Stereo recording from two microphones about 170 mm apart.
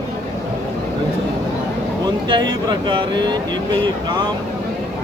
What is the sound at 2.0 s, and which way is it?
Speech, 25° right (ahead or behind).